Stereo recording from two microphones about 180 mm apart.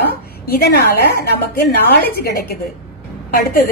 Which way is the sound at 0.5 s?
60° left (ahead or behind).